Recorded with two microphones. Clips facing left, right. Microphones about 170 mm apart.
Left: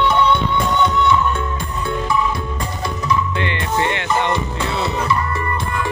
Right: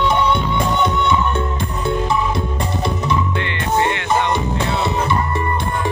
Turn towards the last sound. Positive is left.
turn(degrees=-20)  # may be behind; listen again after turning